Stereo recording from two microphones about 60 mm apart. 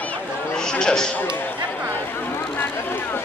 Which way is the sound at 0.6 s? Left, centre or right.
Centre.